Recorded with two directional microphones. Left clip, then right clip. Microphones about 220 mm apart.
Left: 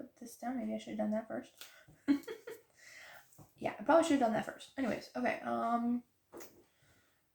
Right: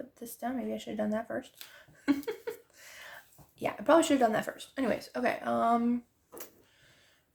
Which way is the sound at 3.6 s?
50° right (ahead or behind).